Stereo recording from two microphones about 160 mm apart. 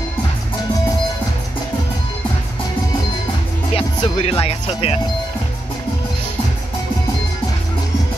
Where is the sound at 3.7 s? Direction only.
35° left (ahead or behind).